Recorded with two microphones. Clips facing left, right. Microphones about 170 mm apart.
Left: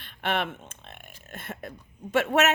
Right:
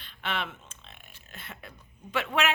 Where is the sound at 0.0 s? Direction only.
55° left (ahead or behind).